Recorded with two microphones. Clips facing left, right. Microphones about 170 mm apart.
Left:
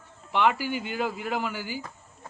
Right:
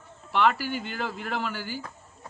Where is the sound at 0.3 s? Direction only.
15° left (ahead or behind).